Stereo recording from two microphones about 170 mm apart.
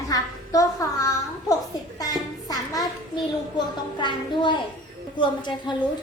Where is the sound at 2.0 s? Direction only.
20° left (ahead or behind).